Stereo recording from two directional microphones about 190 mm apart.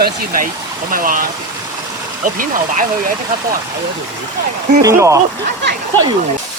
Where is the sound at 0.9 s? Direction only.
45° right (ahead or behind).